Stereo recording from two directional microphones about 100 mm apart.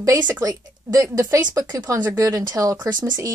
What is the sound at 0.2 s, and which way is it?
A woman's voice, 35° right (ahead or behind).